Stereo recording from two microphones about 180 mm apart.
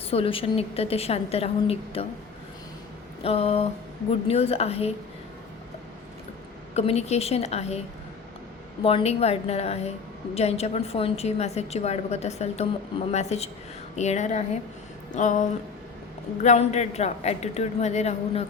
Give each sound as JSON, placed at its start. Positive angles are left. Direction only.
{"t": 0.1, "sound": "a woman's voice", "side_deg": 30}
{"t": 3.2, "sound": "a woman's voice", "side_deg": 35}
{"t": 6.7, "sound": "a woman's voice", "side_deg": 35}
{"t": 8.8, "sound": "a woman's voice", "side_deg": 30}
{"t": 15.1, "sound": "a sound", "side_deg": 45}
{"t": 16.4, "sound": "a woman's voice", "side_deg": 40}